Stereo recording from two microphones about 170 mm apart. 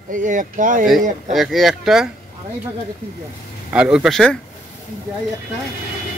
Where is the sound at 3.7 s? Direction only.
5° right (ahead or behind).